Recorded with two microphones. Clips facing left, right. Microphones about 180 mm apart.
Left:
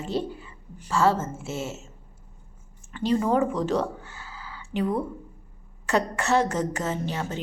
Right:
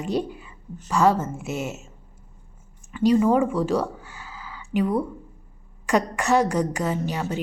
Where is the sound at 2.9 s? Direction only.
10° right (ahead or behind).